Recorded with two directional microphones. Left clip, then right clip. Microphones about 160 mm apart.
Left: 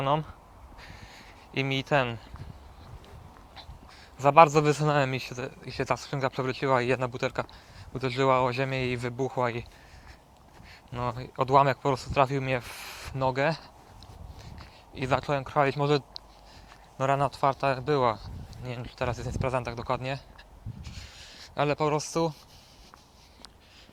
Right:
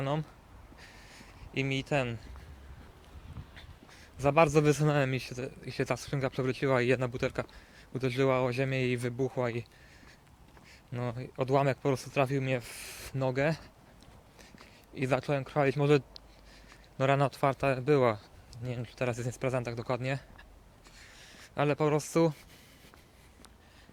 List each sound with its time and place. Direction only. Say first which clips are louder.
0.0 s speech: left 7 dB; 15° right (ahead or behind)
0.8 s a sound: left 5 dB; 15° right (ahead or behind)
4.2 s speech: left 6 dB; 20° right (ahead or behind)
10.9 s speech: left 6 dB; 25° right (ahead or behind); by 18.3 s 45° right (ahead or behind)
18.6 s speech: left 2 dB; 35° right (ahead or behind)
20.9 s a sound: left 4 dB; 10° right (ahead or behind); by 22.4 s 45° right (ahead or behind)